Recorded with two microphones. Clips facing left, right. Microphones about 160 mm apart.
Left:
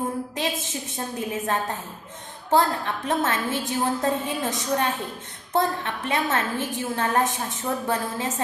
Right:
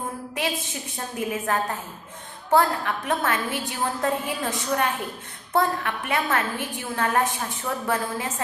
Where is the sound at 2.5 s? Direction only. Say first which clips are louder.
Right 1 dB; 25° left (ahead or behind).